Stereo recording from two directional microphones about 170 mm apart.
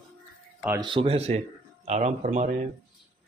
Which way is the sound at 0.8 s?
30° right (ahead or behind).